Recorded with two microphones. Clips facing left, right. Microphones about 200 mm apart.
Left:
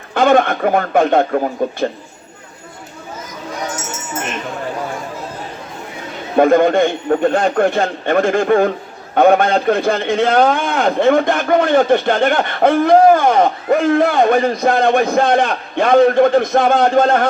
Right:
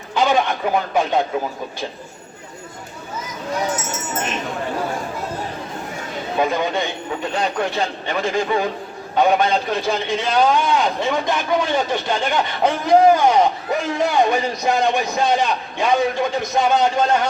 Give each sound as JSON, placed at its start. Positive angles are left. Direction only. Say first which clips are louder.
{"t": 0.1, "sound": "a man's voice", "louder": "left 6 dB", "side_deg": 55}
{"t": 6.3, "sound": "a man's voice", "louder": "left 10 dB", "side_deg": 55}